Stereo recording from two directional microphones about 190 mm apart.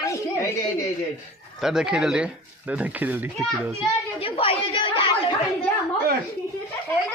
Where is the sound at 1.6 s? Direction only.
5° right (ahead or behind).